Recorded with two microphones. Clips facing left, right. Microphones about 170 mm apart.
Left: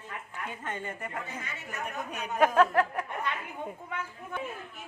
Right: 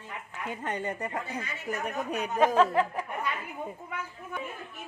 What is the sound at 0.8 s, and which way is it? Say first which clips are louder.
A woman's voice: right 4 dB; 35° right (ahead or behind).